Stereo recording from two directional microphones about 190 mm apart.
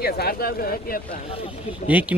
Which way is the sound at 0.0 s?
55° left (ahead or behind).